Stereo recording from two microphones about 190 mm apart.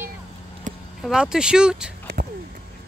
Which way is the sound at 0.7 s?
40° right (ahead or behind).